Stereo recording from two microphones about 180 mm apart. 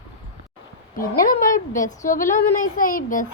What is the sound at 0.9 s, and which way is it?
A woman's voice, 50° left (ahead or behind).